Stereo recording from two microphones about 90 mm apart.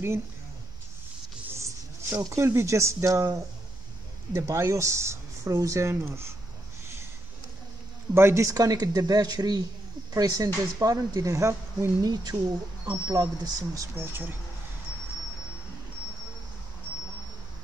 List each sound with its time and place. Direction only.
1.6 s speech: 30° right (ahead or behind)
4.3 s speech: 30° right (ahead or behind)
8.1 s speech: 30° right (ahead or behind)
13.9 s speech: 25° right (ahead or behind)